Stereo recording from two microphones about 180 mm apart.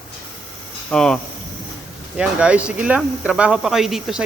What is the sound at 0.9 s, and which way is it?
Speech, 5° left (ahead or behind).